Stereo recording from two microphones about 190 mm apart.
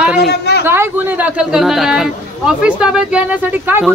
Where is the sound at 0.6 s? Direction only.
10° right (ahead or behind).